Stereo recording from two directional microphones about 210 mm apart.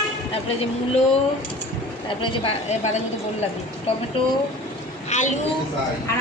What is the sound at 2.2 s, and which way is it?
Speech, 25° left (ahead or behind).